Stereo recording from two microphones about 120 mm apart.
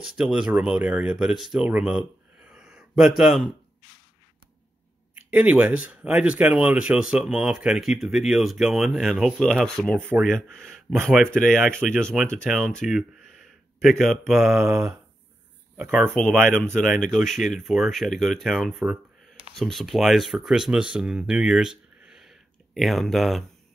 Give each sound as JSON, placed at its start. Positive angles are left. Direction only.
{"t": 0.0, "sound": "speech", "side_deg": -5}
{"t": 5.1, "sound": "speech", "side_deg": -10}
{"t": 9.9, "sound": "speech", "side_deg": -15}
{"t": 10.3, "sound": "speech", "side_deg": 5}
{"t": 16.2, "sound": "speech", "side_deg": 5}